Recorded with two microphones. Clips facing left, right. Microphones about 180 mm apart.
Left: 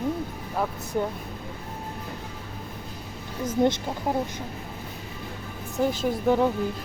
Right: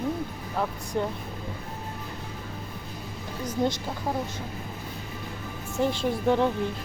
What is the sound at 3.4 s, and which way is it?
Speech, 20° left (ahead or behind).